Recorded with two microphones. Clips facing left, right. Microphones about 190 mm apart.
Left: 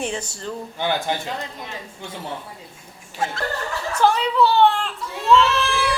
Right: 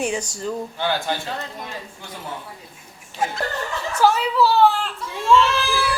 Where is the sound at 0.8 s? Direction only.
15° left (ahead or behind).